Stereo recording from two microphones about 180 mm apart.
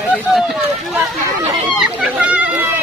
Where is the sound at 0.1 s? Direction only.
Centre (ahead or behind).